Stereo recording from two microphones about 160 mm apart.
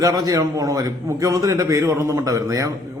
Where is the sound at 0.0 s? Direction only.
20° right (ahead or behind).